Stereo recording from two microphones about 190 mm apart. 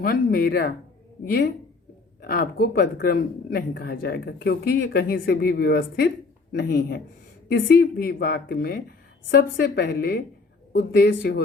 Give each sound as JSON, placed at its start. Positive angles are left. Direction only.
{"t": 0.0, "sound": "speech", "side_deg": 50}
{"t": 2.2, "sound": "speech", "side_deg": 50}